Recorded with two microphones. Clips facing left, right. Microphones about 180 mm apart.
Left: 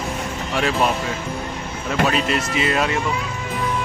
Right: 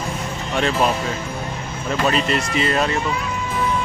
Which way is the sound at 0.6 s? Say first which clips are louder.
Right 1 dB; 5° left (ahead or behind).